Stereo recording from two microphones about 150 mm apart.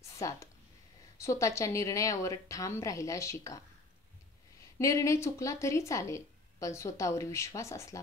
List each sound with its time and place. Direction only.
0.0 s a sound: 20° left (ahead or behind)
1.1 s speech: 20° left (ahead or behind)
4.7 s speech: 20° left (ahead or behind)